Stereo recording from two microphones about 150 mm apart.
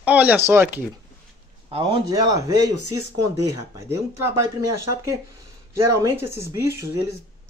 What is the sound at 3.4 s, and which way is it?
Speech, 15° right (ahead or behind).